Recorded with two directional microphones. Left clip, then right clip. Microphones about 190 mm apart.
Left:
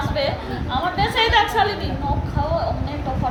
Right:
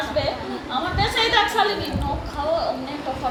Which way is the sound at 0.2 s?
Centre (ahead or behind).